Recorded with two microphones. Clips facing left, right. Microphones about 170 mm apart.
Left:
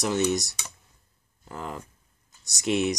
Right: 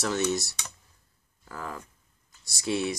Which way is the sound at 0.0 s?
15° left (ahead or behind).